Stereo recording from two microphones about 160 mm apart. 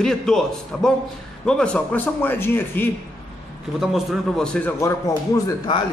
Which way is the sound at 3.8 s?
Centre (ahead or behind).